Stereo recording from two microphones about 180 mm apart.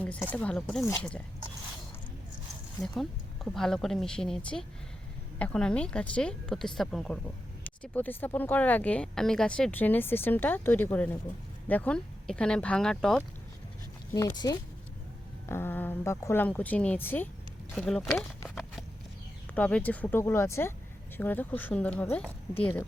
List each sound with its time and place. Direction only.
0.0 s speech: 10° left (ahead or behind)
2.8 s speech: centre (ahead or behind)
14.1 s speech: 20° left (ahead or behind); by 18.1 s centre (ahead or behind)
18.2 s a sound: 5° left (ahead or behind)
19.5 s speech: 10° left (ahead or behind)